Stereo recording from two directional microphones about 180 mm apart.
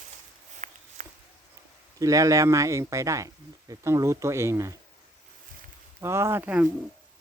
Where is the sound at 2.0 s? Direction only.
20° right (ahead or behind).